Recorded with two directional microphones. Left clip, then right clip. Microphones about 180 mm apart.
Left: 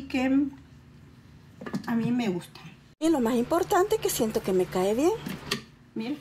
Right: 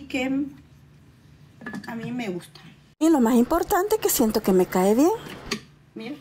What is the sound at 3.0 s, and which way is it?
Speech, 35° right (ahead or behind).